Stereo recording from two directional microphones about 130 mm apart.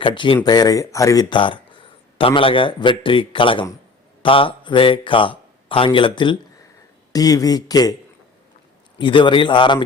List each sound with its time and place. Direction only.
0.0 s speech: 40° left (ahead or behind)
7.1 s speech: 30° left (ahead or behind)
9.0 s speech: 40° left (ahead or behind)